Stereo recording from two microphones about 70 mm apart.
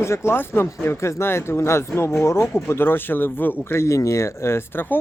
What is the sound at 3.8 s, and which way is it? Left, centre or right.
Speech, left.